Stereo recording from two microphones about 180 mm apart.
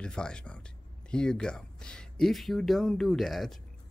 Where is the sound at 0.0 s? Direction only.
5° left (ahead or behind).